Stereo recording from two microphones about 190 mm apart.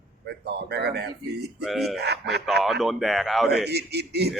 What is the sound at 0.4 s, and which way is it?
A man's voice, 60° right (ahead or behind).